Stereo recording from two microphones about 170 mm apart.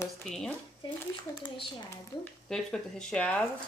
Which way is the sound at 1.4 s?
30° left (ahead or behind).